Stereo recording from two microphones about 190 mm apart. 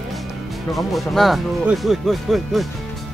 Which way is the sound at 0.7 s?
Centre (ahead or behind).